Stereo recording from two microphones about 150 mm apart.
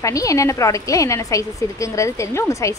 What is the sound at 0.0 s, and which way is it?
A woman's voice, 20° left (ahead or behind).